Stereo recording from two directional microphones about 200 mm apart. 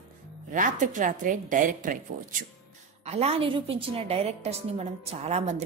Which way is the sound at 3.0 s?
30° right (ahead or behind).